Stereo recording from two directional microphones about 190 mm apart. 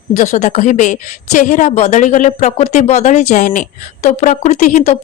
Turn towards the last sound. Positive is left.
turn(degrees=40)  # may be behind; listen again after turning